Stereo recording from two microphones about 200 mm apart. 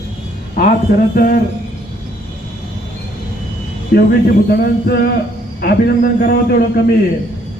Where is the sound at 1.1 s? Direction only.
45° left (ahead or behind).